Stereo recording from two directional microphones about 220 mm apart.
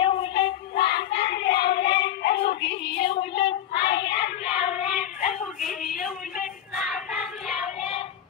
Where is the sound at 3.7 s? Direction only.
45° left (ahead or behind).